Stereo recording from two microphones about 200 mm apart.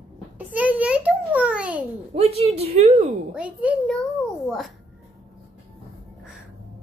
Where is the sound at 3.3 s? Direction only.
5° right (ahead or behind).